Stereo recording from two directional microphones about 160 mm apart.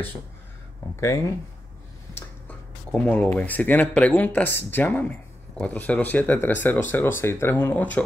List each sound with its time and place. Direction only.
0.9 s speech: 20° left (ahead or behind)